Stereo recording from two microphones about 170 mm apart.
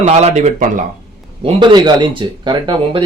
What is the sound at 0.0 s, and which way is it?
Speech, 40° right (ahead or behind).